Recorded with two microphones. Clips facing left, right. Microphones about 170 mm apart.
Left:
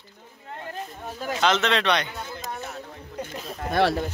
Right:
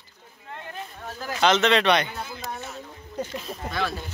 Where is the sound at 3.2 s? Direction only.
65° left (ahead or behind).